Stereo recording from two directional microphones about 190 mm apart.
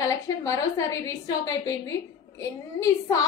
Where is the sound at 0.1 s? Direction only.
15° left (ahead or behind).